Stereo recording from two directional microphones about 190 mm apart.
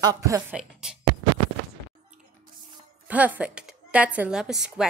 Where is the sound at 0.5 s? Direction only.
5° right (ahead or behind).